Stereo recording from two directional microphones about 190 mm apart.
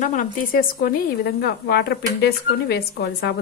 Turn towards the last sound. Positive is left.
turn(degrees=60)  # may be behind; listen again after turning